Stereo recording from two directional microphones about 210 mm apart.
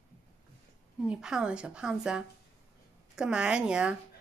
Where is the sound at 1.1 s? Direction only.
5° right (ahead or behind).